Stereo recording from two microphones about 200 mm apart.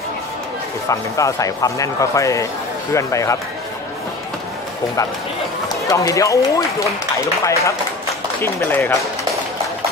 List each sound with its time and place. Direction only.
0.8 s a man's voice: 15° left (ahead or behind)
5.9 s a man's voice: 15° left (ahead or behind)